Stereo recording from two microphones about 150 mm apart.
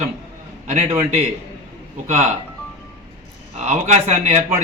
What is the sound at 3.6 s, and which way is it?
Speech, 45° right (ahead or behind).